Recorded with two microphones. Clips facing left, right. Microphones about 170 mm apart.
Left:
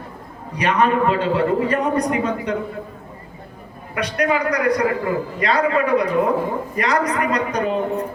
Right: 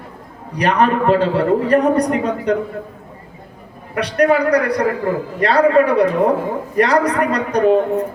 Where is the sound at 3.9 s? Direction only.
35° right (ahead or behind).